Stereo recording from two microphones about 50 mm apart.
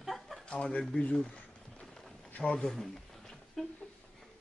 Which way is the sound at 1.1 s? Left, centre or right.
Centre.